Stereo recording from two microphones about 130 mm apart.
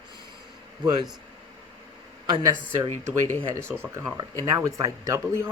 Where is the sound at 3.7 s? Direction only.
15° right (ahead or behind).